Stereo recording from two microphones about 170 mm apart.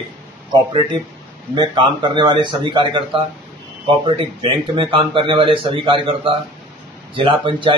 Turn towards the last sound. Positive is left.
turn(degrees=-30)  # may be behind; listen again after turning